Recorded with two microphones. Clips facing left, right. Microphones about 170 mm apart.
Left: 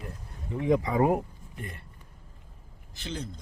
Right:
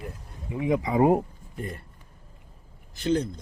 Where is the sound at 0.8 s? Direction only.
20° right (ahead or behind).